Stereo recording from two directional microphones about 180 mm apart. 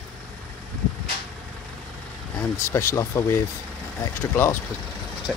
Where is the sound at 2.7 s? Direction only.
15° left (ahead or behind).